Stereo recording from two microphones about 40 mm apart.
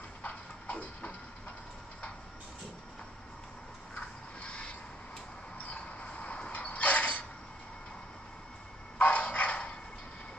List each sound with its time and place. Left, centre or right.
0.2 s music: left
3.9 s a sound: left
8.9 s dog: left